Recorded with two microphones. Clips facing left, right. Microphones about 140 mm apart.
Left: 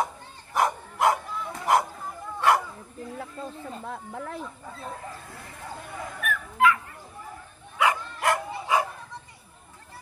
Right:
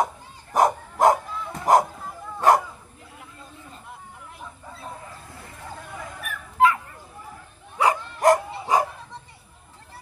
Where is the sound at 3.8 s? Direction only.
90° left.